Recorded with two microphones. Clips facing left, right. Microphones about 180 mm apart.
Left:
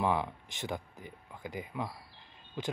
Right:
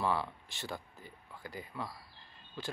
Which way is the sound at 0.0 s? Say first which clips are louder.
Left 3 dB; 15° left (ahead or behind).